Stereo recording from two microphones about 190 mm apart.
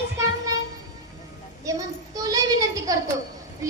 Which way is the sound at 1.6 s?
20° right (ahead or behind).